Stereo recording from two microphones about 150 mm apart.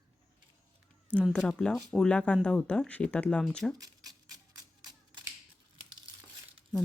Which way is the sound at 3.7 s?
25° right (ahead or behind).